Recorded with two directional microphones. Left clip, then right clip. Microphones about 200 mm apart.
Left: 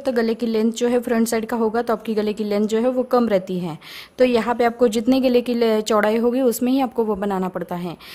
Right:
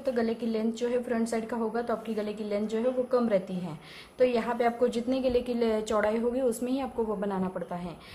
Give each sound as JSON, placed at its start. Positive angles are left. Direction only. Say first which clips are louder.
{"t": 0.0, "sound": "a woman's voice", "louder": "left 8 dB", "side_deg": 50}